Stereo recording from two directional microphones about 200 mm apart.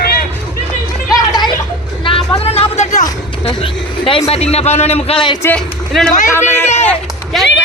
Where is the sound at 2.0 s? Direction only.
25° left (ahead or behind).